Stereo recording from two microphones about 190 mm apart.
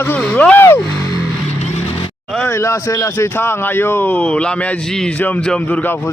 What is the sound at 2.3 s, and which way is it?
Speech, 10° left (ahead or behind).